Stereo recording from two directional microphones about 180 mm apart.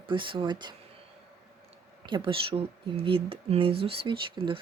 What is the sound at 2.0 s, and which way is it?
Speech, 25° right (ahead or behind).